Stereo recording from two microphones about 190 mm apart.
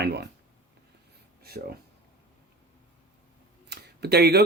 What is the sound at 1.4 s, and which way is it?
Speech, 55° right (ahead or behind).